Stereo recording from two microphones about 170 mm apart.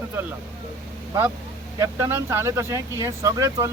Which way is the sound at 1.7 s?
15° right (ahead or behind).